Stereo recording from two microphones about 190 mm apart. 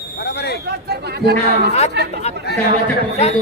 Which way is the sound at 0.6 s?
60° right (ahead or behind).